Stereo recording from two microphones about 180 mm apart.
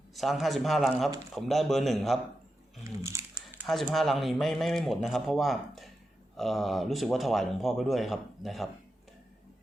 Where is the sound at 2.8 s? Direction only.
15° right (ahead or behind).